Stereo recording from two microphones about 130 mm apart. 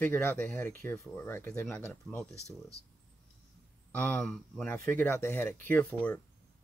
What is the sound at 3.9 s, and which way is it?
Speech, 10° left (ahead or behind).